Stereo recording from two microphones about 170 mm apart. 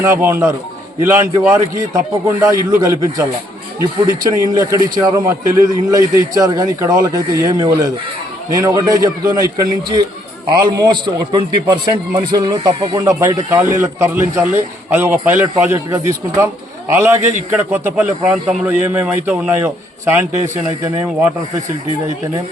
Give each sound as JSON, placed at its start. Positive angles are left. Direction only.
{"t": 0.0, "sound": "a man's voice", "side_deg": -15}